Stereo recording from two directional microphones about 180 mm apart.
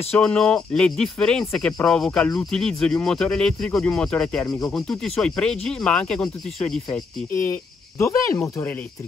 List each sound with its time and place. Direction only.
0.1 s speech: 5° left (ahead or behind)
8.0 s speech: 15° left (ahead or behind)